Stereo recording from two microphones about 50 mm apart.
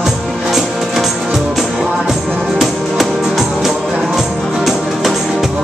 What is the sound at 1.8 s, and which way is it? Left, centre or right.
Music, centre.